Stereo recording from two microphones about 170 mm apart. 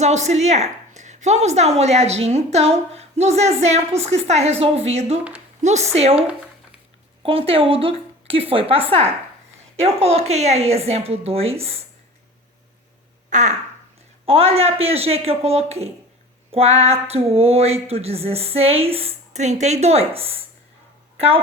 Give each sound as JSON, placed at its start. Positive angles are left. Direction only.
{"t": 0.0, "sound": "a woman's voice", "side_deg": -40}
{"t": 7.2, "sound": "a woman's voice", "side_deg": -35}
{"t": 13.3, "sound": "fart", "side_deg": -45}
{"t": 14.3, "sound": "a woman's voice", "side_deg": -35}